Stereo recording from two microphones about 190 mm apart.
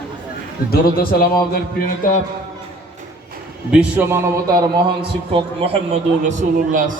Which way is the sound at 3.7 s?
5° right (ahead or behind).